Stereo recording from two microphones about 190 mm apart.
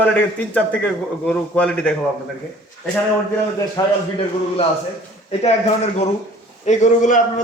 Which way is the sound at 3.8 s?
20° left (ahead or behind).